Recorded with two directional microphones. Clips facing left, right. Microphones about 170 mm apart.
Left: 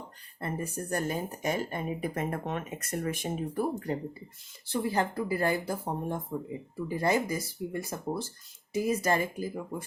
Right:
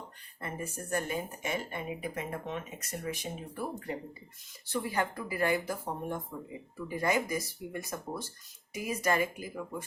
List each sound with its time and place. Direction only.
0.3 s speech: 35° left (ahead or behind)
4.6 s speech: 30° left (ahead or behind)